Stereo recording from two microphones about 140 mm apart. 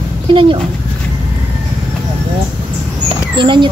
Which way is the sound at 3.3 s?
35° right (ahead or behind).